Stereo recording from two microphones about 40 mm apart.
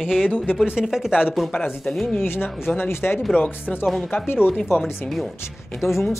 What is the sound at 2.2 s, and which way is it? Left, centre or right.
Speech, left.